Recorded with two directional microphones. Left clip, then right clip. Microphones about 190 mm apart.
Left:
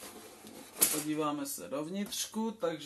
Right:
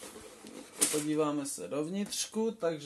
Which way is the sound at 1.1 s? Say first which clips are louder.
Right 3 dB; 40° right (ahead or behind).